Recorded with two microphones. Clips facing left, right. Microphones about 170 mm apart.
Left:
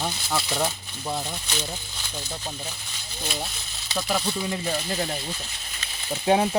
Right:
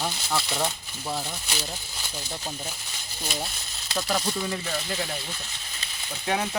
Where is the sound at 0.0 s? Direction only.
Centre (ahead or behind).